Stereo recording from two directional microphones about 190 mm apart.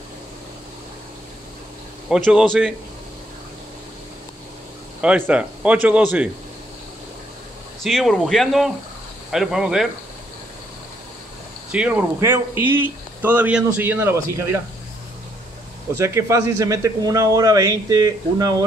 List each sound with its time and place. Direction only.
2.0 s speech: centre (ahead or behind)
5.0 s speech: 5° right (ahead or behind)
7.8 s speech: centre (ahead or behind)
11.7 s speech: 5° right (ahead or behind)
15.9 s speech: 15° right (ahead or behind)